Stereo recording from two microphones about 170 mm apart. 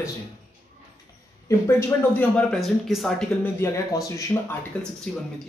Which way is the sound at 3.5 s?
15° left (ahead or behind).